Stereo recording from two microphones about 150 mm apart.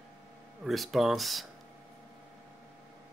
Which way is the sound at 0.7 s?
Centre (ahead or behind).